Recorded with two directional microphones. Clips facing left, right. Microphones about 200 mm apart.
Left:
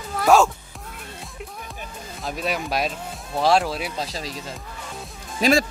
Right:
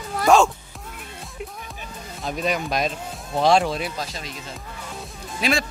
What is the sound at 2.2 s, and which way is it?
Speech, centre (ahead or behind).